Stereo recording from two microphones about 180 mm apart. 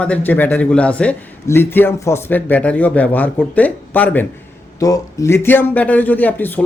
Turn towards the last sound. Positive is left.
turn(degrees=10)  # may be behind; listen again after turning